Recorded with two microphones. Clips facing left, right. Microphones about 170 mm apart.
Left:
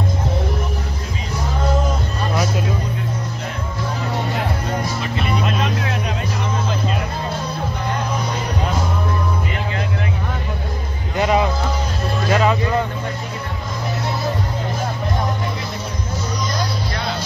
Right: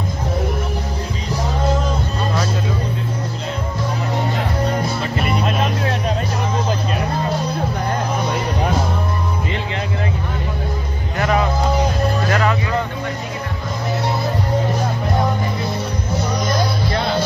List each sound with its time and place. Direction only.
5.4 s music: 35° right (ahead or behind)
11.1 s music: 20° left (ahead or behind)